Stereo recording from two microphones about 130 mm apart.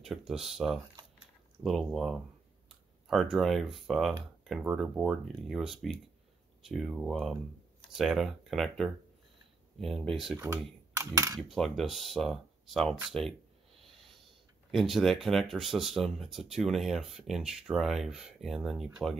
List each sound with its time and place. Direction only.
0.0 s speech: 5° right (ahead or behind)
10.3 s speech: 20° right (ahead or behind)
11.3 s speech: centre (ahead or behind)
13.8 s snort: centre (ahead or behind)
14.7 s speech: centre (ahead or behind)